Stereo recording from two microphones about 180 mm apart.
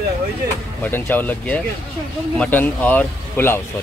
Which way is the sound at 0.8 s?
10° left (ahead or behind).